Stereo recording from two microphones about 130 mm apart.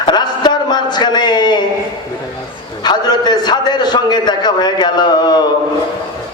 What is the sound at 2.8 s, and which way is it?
A man's voice, 35° left (ahead or behind).